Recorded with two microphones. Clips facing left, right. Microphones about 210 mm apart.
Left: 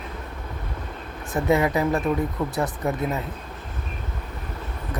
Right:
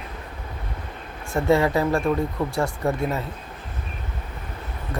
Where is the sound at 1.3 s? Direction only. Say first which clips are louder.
Right 1 dB; 20° left (ahead or behind).